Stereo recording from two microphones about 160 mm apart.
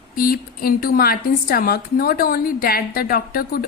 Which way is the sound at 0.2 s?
65° left (ahead or behind).